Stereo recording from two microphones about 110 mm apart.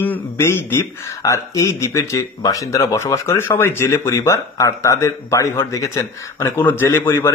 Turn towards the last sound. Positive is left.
turn(degrees=20)  # may be behind; listen again after turning